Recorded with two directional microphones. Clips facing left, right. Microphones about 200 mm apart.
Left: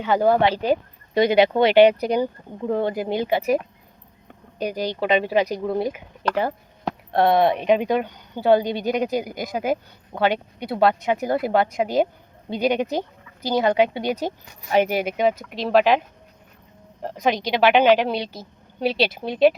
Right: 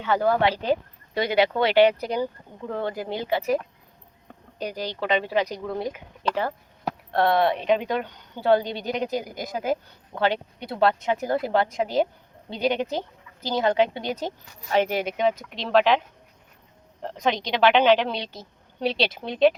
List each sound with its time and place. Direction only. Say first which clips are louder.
0.0 s speech: left 3 dB; 15° left (ahead or behind)